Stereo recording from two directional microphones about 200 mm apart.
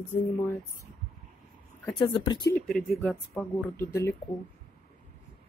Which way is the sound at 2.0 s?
25° left (ahead or behind).